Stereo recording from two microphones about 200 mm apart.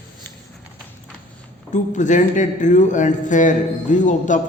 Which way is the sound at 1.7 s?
40° left (ahead or behind).